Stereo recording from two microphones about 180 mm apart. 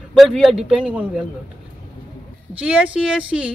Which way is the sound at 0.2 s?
Centre (ahead or behind).